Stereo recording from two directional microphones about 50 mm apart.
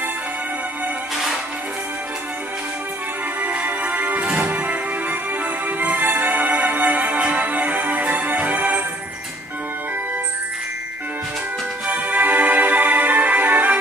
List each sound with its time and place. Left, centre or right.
3.4 s music: right
5.8 s music: right
11.9 s music: right